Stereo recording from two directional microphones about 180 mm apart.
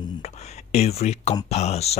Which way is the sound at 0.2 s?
35° left (ahead or behind).